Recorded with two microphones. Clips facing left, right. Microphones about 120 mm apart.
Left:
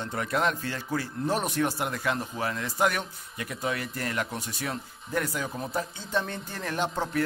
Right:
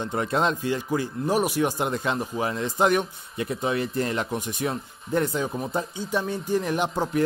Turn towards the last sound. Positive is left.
turn(degrees=-15)  # may be behind; listen again after turning